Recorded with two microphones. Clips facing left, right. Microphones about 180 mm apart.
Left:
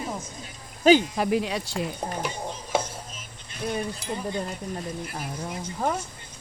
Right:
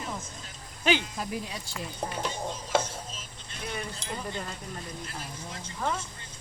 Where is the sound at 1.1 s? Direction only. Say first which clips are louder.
Left 10 dB; 75° left (ahead or behind).